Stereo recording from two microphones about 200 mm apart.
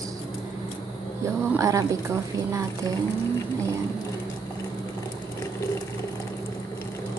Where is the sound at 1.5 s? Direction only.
15° right (ahead or behind).